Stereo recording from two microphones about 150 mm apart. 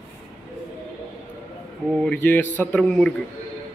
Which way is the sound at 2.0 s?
15° left (ahead or behind).